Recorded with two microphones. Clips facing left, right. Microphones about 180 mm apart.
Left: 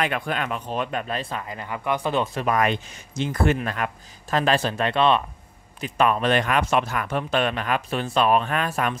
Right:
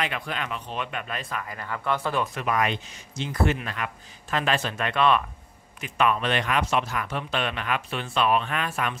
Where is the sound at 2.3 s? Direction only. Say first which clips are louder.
Left 4 dB; 45° left (ahead or behind); by 5.2 s 30° left (ahead or behind).